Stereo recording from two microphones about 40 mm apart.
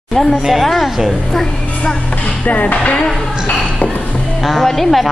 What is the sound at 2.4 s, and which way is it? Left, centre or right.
Music, left.